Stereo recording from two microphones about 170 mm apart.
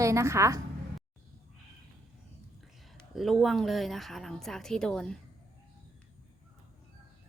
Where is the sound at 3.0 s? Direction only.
Centre (ahead or behind).